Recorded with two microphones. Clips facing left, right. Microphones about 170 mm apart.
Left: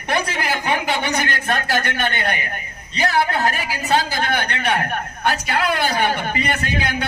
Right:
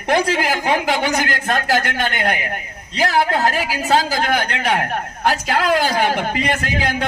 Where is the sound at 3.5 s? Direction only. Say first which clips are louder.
Right 3 dB; 90° right.